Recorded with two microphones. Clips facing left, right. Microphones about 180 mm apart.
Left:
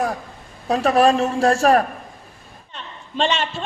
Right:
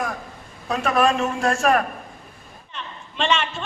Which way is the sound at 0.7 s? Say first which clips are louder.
Left 4 dB; 35° left (ahead or behind).